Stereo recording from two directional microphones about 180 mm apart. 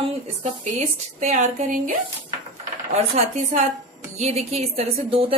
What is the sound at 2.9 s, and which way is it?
A woman's voice, 40° right (ahead or behind).